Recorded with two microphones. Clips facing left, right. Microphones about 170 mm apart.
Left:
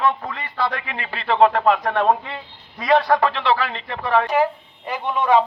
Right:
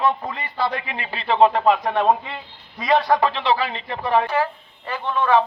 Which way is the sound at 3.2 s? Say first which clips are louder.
Even; 35° right (ahead or behind).